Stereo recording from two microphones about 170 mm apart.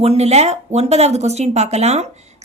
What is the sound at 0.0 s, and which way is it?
A woman's voice, 40° right (ahead or behind).